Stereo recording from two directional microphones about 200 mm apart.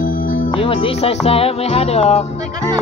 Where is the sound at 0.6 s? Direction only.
25° left (ahead or behind).